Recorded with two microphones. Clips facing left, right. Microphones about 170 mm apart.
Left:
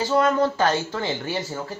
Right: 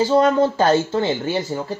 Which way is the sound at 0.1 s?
30° right (ahead or behind).